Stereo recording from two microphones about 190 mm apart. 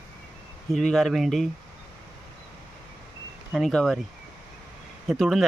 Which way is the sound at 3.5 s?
Centre (ahead or behind).